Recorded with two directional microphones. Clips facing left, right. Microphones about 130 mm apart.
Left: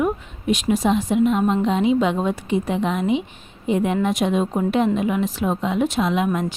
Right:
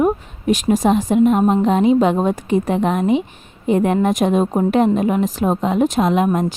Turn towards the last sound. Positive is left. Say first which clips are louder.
# right 5 dB
turn(degrees=-40)  # may be behind; listen again after turning